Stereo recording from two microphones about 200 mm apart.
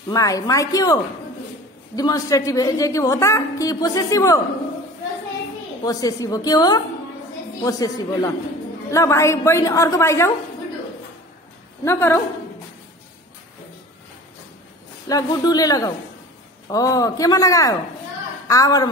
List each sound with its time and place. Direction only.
0.1 s a woman's voice: 15° left (ahead or behind)
2.0 s a woman's voice: 20° left (ahead or behind)
5.9 s a woman's voice: 20° left (ahead or behind)
11.8 s a woman's voice: 15° left (ahead or behind)
15.0 s a woman's voice: 20° left (ahead or behind)